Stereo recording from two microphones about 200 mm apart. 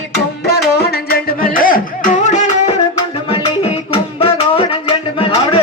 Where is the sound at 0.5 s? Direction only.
50° left (ahead or behind).